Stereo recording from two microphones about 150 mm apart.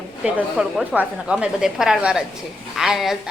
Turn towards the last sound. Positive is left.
turn(degrees=0)  # may be behind; listen again after turning